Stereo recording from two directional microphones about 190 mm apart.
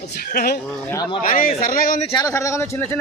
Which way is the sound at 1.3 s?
50° left (ahead or behind).